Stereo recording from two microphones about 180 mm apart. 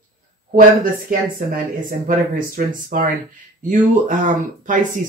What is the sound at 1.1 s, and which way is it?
Speech, 50° right (ahead or behind).